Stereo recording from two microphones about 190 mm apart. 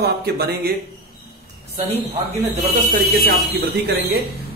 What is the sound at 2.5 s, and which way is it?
A man's voice, 45° right (ahead or behind).